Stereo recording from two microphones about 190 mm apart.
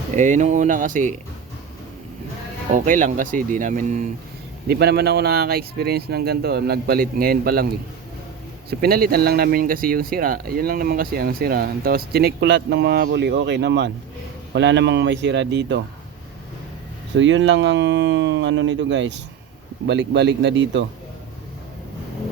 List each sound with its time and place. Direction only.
0.1 s speech: 40° right (ahead or behind)
2.7 s speech: 45° right (ahead or behind)
4.7 s speech: 55° right (ahead or behind)
8.8 s speech: 50° right (ahead or behind)
17.2 s speech: 75° right (ahead or behind)